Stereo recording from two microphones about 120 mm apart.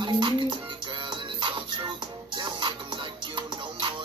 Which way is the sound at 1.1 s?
40° right (ahead or behind).